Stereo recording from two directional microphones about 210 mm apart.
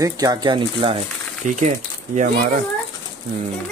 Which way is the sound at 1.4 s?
35° right (ahead or behind).